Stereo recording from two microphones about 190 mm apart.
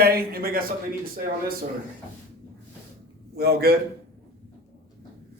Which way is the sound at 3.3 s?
55° right (ahead or behind).